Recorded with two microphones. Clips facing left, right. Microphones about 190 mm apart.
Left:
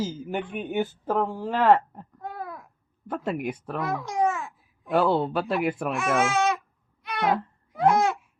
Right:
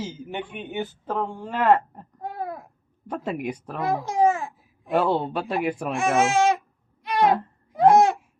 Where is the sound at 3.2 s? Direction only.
25° right (ahead or behind).